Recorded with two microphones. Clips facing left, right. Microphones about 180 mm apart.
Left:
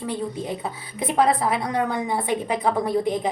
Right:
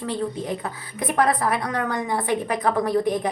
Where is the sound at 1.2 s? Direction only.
25° left (ahead or behind).